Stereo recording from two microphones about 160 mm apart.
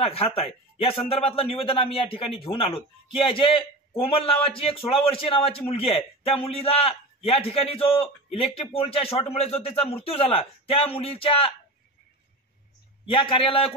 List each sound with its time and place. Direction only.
0.1 s a man's voice: 35° left (ahead or behind)
13.1 s a man's voice: 35° left (ahead or behind)